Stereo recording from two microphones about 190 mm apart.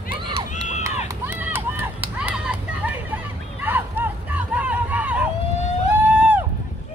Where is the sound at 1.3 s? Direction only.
10° right (ahead or behind).